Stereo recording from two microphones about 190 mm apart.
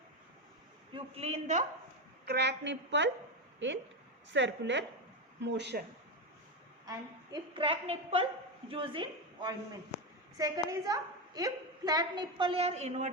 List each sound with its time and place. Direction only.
0.9 s a woman's voice: 35° right (ahead or behind)
2.2 s a woman's voice: 60° right (ahead or behind)
4.3 s a woman's voice: 70° right (ahead or behind)
6.8 s a woman's voice: 20° right (ahead or behind)
9.9 s a sound: 35° left (ahead or behind)
10.3 s a woman's voice: 20° right (ahead or behind); by 13.1 s 35° right (ahead or behind)